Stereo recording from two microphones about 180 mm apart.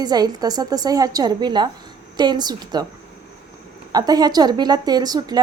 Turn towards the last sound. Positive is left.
turn(degrees=-20)  # may be behind; listen again after turning